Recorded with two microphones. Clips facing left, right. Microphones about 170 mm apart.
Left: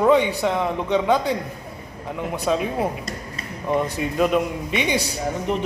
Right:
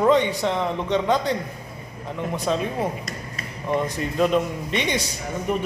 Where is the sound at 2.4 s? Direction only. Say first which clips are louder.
Left 3 dB; 5° left (ahead or behind).